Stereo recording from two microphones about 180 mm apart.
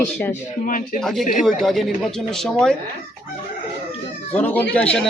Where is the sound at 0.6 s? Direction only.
50° left (ahead or behind).